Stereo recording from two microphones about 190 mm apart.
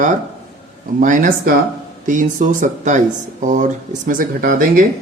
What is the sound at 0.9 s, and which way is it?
Speech, 45° right (ahead or behind).